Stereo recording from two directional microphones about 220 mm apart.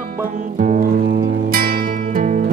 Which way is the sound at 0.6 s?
35° right (ahead or behind).